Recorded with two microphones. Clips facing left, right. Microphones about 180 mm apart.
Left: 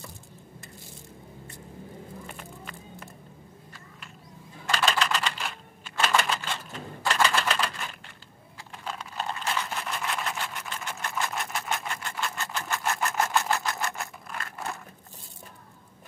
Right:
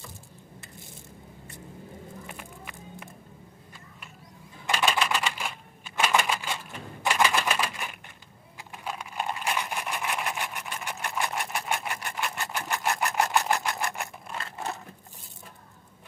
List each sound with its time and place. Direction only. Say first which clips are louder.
2.3 s music: left 1 dB; 10° right (ahead or behind)
4.6 s typing: even; 10° right (ahead or behind)
5.9 s typewriter: even; 10° right (ahead or behind)
8.5 s a sound: right 1 dB; 15° right (ahead or behind)